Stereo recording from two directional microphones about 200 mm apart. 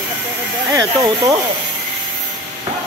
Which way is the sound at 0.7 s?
15° right (ahead or behind).